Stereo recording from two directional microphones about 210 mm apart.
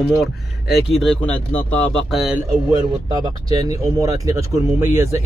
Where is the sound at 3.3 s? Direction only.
20° right (ahead or behind).